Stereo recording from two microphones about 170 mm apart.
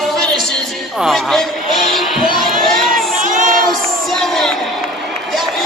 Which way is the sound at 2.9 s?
50° right (ahead or behind).